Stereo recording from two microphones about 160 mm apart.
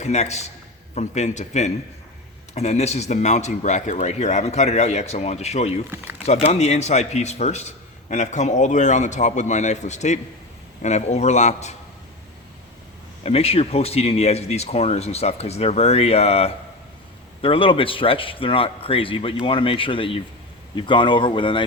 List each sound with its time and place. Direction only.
0.0 s speech: 45° left (ahead or behind)
5.9 s speech: 10° right (ahead or behind)
6.2 s speech: 45° left (ahead or behind)
13.2 s speech: 40° left (ahead or behind)